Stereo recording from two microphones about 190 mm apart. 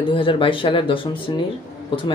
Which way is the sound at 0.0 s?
25° left (ahead or behind).